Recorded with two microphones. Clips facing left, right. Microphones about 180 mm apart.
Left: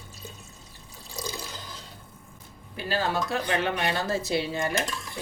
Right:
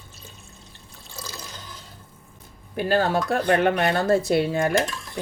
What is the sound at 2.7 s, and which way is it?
Speech, 55° right (ahead or behind).